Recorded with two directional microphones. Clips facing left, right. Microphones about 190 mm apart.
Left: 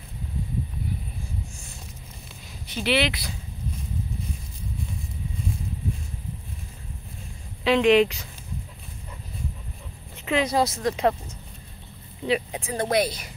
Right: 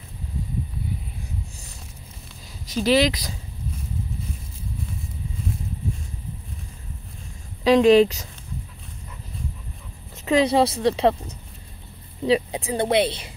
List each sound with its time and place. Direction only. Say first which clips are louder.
2.7 s speech: right 5 dB; 40° right (ahead or behind)
7.6 s speech: right 4 dB; 40° right (ahead or behind)
10.2 s speech: right 5 dB; 35° right (ahead or behind)
12.3 s speech: right 5 dB; 35° right (ahead or behind)